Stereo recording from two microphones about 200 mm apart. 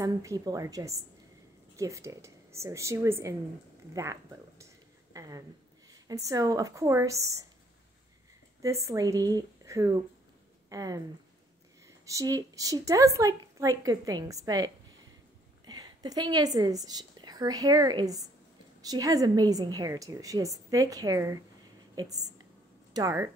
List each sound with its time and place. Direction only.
0.0 s a woman's voice: 15° right (ahead or behind)
5.1 s a sound: 15° right (ahead or behind)
6.0 s a woman's voice: 15° right (ahead or behind)
8.6 s a woman's voice: 15° right (ahead or behind)
12.1 s a woman's voice: 15° right (ahead or behind)